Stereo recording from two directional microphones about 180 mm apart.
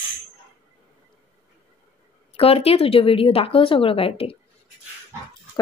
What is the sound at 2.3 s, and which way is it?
Speech, 30° left (ahead or behind).